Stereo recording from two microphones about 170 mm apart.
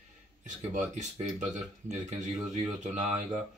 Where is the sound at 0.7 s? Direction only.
45° right (ahead or behind).